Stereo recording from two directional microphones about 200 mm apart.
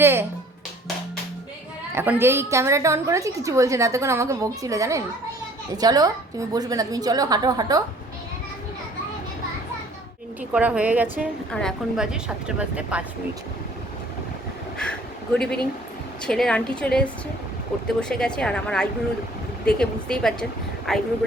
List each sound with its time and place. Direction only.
0.0 s speech: 10° right (ahead or behind)
2.0 s a woman's voice: 10° right (ahead or behind)
10.5 s a woman's voice: 5° right (ahead or behind)
14.8 s a sound: 5° left (ahead or behind)
16.2 s speech: 5° left (ahead or behind)
18.1 s speech: 5° left (ahead or behind)